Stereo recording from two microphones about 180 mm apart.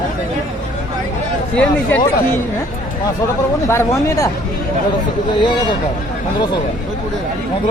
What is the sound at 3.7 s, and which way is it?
Speech, 15° left (ahead or behind).